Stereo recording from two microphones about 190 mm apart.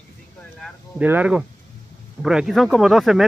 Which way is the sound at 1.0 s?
10° right (ahead or behind).